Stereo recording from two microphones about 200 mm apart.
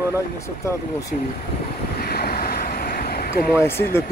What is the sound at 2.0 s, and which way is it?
Vehicle, 50° left (ahead or behind).